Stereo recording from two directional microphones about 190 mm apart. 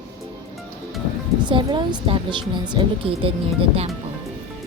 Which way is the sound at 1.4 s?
25° right (ahead or behind).